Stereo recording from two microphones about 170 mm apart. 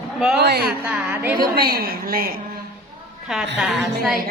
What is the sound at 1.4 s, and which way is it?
Speech, 60° right (ahead or behind).